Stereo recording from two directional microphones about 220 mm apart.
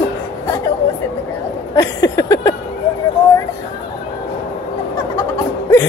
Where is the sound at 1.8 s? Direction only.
15° left (ahead or behind).